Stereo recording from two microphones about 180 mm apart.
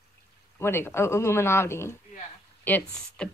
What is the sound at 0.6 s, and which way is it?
Speech, 15° left (ahead or behind).